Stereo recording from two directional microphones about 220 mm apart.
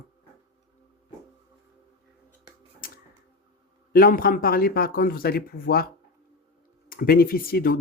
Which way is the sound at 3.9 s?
40° left (ahead or behind).